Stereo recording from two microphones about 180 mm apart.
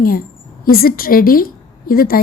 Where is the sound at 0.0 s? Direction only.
55° left (ahead or behind).